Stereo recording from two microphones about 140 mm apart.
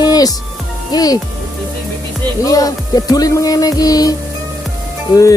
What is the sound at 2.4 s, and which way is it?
Music, 25° left (ahead or behind).